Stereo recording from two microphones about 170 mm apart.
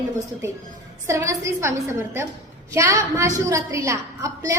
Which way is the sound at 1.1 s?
20° right (ahead or behind).